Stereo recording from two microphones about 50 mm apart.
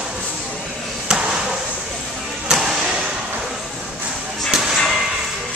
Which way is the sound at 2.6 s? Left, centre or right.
Centre.